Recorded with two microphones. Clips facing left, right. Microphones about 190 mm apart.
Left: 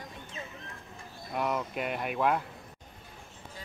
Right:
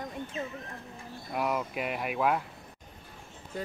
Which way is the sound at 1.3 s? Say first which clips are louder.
Right 1 dB; 5° right (ahead or behind).